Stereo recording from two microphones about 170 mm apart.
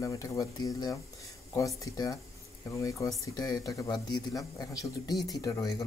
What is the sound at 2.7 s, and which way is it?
Speech, 20° left (ahead or behind).